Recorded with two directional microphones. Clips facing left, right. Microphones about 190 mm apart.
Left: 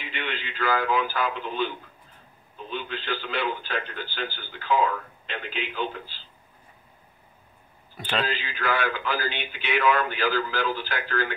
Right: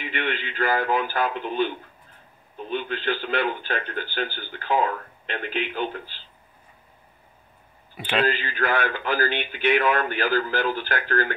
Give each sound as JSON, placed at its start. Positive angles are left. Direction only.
{"t": 0.0, "sound": "a man's voice", "side_deg": -55}
{"t": 7.9, "sound": "speech", "side_deg": -10}
{"t": 8.3, "sound": "a man's voice", "side_deg": -50}